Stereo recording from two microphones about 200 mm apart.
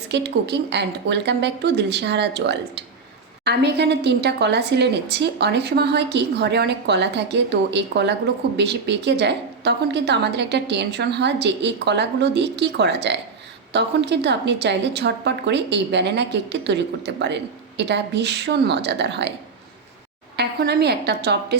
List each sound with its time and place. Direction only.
0.1 s a woman's voice: 55° right (ahead or behind)
20.3 s a woman's voice: 55° right (ahead or behind)